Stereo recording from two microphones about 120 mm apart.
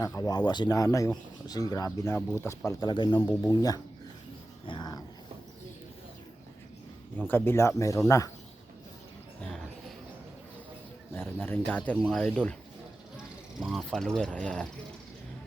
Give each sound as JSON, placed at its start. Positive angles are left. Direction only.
{"t": 0.0, "sound": "speech", "side_deg": 30}
{"t": 2.6, "sound": "speech", "side_deg": 35}
{"t": 4.6, "sound": "dog", "side_deg": 40}
{"t": 7.2, "sound": "speech", "side_deg": 15}
{"t": 11.1, "sound": "speech", "side_deg": 20}
{"t": 13.1, "sound": "speech", "side_deg": -5}